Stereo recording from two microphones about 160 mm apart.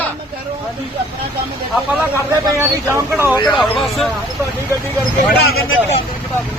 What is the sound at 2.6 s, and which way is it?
Speech, 15° right (ahead or behind).